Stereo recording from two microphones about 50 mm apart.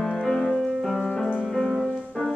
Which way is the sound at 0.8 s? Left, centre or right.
Centre.